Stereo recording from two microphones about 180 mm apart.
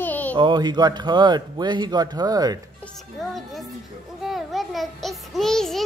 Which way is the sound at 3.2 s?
Centre (ahead or behind).